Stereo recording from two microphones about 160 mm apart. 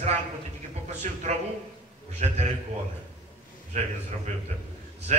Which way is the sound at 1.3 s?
50° right (ahead or behind).